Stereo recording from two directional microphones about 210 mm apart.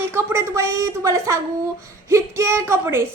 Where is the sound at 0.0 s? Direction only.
10° right (ahead or behind).